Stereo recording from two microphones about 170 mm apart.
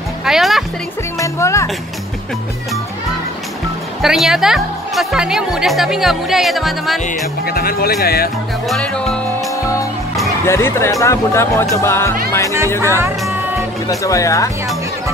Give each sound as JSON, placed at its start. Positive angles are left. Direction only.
{"t": 0.2, "sound": "speech", "side_deg": 0}
{"t": 1.2, "sound": "speech", "side_deg": 15}
{"t": 4.0, "sound": "speech", "side_deg": 0}
{"t": 7.4, "sound": "speech", "side_deg": 65}
{"t": 8.6, "sound": "speech", "side_deg": 5}
{"t": 10.4, "sound": "speech", "side_deg": 15}
{"t": 13.8, "sound": "speech", "side_deg": 20}